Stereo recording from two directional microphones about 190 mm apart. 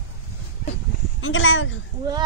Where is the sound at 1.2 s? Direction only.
90° left.